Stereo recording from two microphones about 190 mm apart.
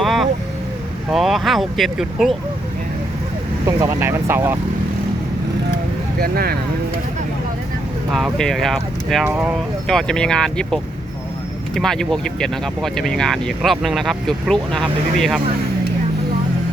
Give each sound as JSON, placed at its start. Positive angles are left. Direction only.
{"t": 0.0, "sound": "vehicle", "side_deg": 0}
{"t": 1.1, "sound": "speech", "side_deg": 0}
{"t": 3.7, "sound": "speech", "side_deg": -15}
{"t": 6.1, "sound": "speech", "side_deg": -50}
{"t": 8.1, "sound": "speech", "side_deg": 0}
{"t": 9.2, "sound": "speech", "side_deg": -10}
{"t": 9.8, "sound": "speech", "side_deg": 0}